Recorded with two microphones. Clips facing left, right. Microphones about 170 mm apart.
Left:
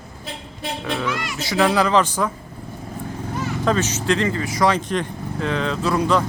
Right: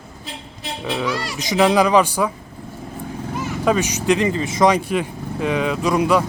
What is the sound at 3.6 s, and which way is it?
Speech, 15° right (ahead or behind).